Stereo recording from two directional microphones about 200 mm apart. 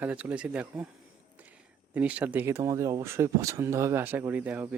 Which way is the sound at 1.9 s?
5° right (ahead or behind).